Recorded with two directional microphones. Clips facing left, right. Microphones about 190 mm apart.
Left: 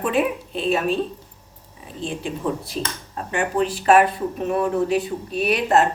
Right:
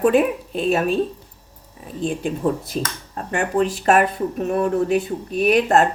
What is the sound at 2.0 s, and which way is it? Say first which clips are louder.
Speech: right 4 dB; 45° right (ahead or behind).